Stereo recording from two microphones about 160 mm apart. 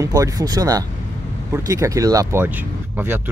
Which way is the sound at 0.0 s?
20° right (ahead or behind).